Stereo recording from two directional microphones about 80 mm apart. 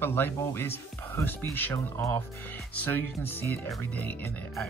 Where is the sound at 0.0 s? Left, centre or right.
Left.